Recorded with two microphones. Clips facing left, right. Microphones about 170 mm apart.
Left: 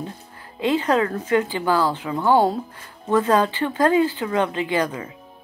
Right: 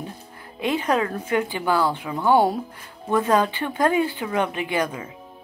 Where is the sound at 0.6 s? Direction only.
15° right (ahead or behind).